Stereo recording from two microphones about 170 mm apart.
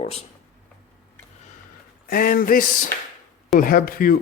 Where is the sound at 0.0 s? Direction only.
35° left (ahead or behind).